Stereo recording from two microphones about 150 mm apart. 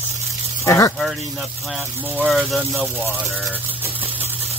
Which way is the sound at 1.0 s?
Centre (ahead or behind).